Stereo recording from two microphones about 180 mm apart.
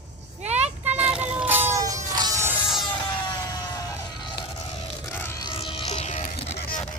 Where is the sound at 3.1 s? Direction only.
25° left (ahead or behind).